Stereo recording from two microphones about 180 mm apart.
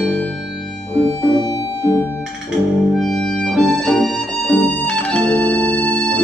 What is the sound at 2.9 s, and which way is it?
Music, centre (ahead or behind).